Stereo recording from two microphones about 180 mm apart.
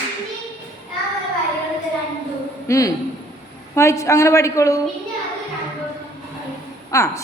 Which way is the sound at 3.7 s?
15° left (ahead or behind).